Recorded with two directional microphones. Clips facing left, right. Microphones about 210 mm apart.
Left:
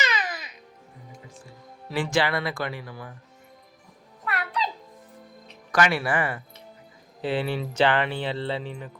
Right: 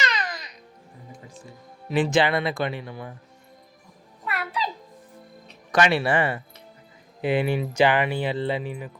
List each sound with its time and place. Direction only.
0.0 s music: 5° left (ahead or behind)
1.9 s speech: 20° right (ahead or behind)
4.3 s a sound: centre (ahead or behind)
5.7 s speech: 25° right (ahead or behind)
7.2 s speech: 15° right (ahead or behind)